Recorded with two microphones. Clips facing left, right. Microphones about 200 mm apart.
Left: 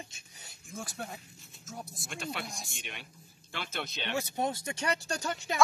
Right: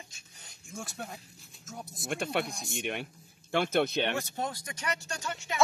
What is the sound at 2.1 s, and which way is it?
Speech, 55° right (ahead or behind).